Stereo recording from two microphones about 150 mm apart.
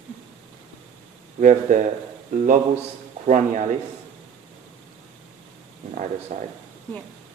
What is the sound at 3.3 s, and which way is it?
Speech, 55° right (ahead or behind).